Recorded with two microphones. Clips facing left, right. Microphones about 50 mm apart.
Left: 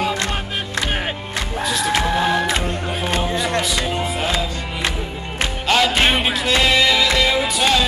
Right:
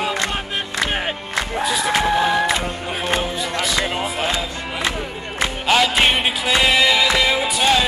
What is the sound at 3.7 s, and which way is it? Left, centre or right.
Speech, centre.